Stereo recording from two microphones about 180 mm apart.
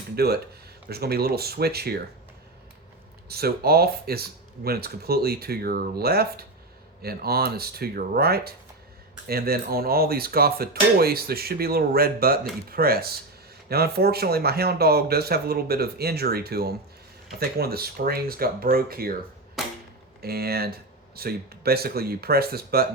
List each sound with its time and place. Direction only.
0.2 s speech: 60° right (ahead or behind)
3.2 s speech: 60° right (ahead or behind)
20.2 s speech: 60° right (ahead or behind)